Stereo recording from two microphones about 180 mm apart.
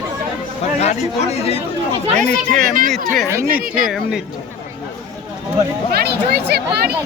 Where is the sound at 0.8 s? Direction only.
35° left (ahead or behind).